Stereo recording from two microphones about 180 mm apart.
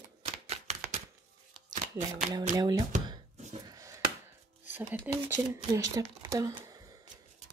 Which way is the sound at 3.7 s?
20° right (ahead or behind).